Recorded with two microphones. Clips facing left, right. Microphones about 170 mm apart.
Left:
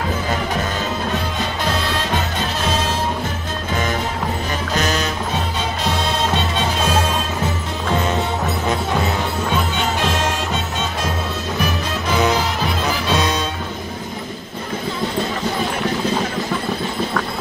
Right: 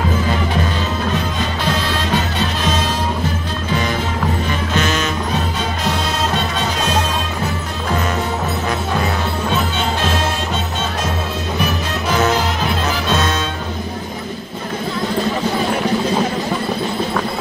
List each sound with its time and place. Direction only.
4.7 s music: 35° left (ahead or behind)
13.1 s music: 15° left (ahead or behind)